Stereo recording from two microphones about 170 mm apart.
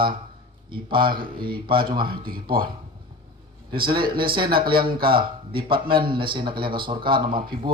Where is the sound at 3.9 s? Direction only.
30° right (ahead or behind).